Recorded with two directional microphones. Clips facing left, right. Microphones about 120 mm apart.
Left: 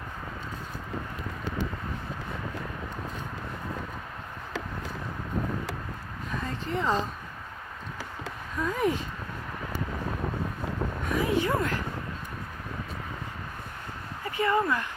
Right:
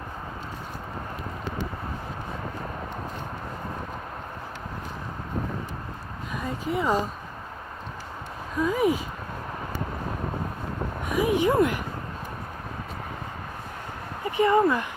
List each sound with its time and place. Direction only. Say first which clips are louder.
6.3 s speech: right 3 dB; 10° right (ahead or behind)
8.5 s speech: right 4 dB; 5° right (ahead or behind)
11.1 s a sound: right 4 dB; 15° right (ahead or behind)
14.3 s speech: right 5 dB; 20° right (ahead or behind)